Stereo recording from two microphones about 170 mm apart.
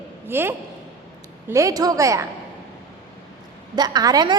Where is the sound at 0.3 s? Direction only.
15° right (ahead or behind).